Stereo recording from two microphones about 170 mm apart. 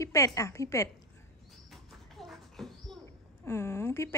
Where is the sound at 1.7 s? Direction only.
Centre (ahead or behind).